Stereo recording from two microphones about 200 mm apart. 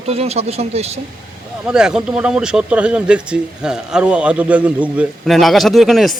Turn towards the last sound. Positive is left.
turn(degrees=0)  # may be behind; listen again after turning